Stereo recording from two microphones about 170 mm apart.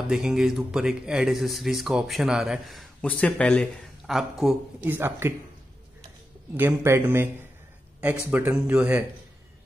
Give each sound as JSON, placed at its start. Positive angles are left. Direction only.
{"t": 0.1, "sound": "speech", "side_deg": -5}
{"t": 4.9, "sound": "speech", "side_deg": -15}
{"t": 6.5, "sound": "speech", "side_deg": -15}
{"t": 8.3, "sound": "speech", "side_deg": -10}